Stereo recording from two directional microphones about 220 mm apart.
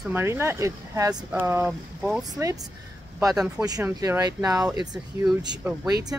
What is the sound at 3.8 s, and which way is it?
Speech, 10° right (ahead or behind).